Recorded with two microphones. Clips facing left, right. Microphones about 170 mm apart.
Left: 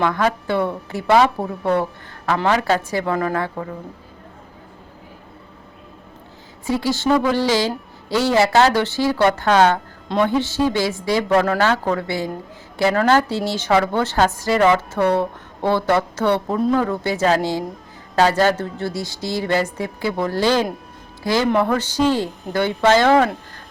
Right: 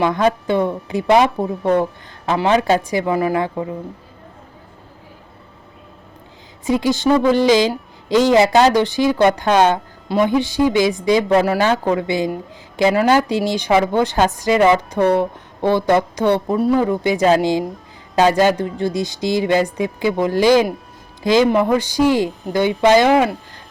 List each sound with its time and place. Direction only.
0.0 s a woman's voice: 20° right (ahead or behind)
6.7 s a woman's voice: 15° right (ahead or behind)